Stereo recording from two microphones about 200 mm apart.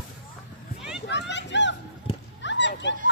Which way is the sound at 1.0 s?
60° left (ahead or behind).